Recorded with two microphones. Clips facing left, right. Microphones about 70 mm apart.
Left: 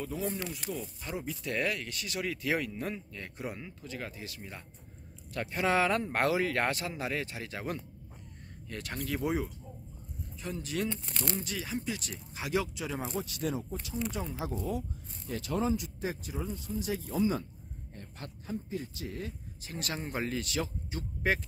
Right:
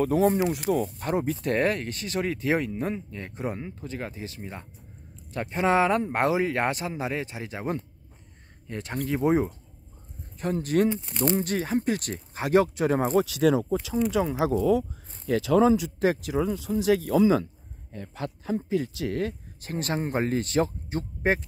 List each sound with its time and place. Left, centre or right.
0.0 s speech: right
10.4 s speech: right
10.9 s speech: centre
11.3 s speech: right
13.2 s speech: right
18.4 s speech: right
19.6 s speech: right